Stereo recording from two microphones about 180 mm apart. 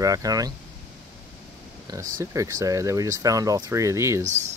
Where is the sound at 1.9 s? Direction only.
20° right (ahead or behind).